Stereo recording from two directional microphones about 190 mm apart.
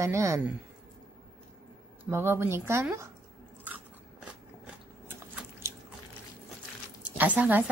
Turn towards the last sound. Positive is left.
turn(degrees=-10)  # may be behind; listen again after turning